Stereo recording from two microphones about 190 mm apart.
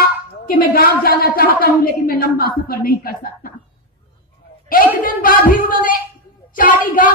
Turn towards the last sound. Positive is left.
turn(degrees=45)  # may be behind; listen again after turning